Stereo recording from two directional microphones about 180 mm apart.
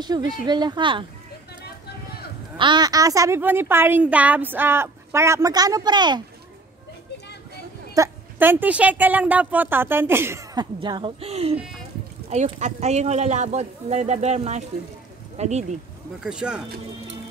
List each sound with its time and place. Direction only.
0.0 s speech: 25° right (ahead or behind)
2.5 s a woman's voice: 25° right (ahead or behind)
7.9 s a woman's voice: 15° right (ahead or behind); by 15.8 s 40° right (ahead or behind)
16.2 s speech: 5° right (ahead or behind)